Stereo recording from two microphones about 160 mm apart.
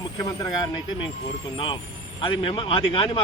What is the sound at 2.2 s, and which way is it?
A man's voice, 30° left (ahead or behind).